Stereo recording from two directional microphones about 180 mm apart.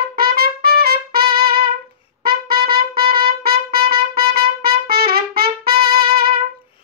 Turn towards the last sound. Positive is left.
turn(degrees=-55)  # may be behind; listen again after turning